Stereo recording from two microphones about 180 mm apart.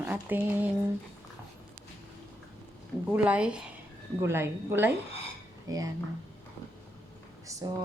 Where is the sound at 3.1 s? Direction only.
5° right (ahead or behind).